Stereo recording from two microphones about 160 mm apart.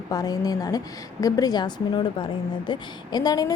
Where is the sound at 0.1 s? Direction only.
25° left (ahead or behind).